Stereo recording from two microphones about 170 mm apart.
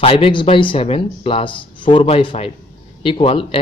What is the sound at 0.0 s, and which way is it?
Speech, 30° left (ahead or behind).